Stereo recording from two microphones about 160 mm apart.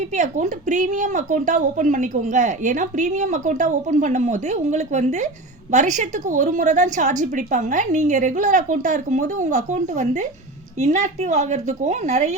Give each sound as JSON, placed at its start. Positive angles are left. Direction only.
{"t": 0.2, "sound": "speech", "side_deg": -50}